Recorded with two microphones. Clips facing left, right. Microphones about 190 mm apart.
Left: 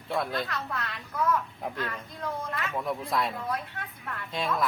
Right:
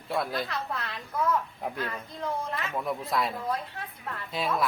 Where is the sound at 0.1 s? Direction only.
Centre (ahead or behind).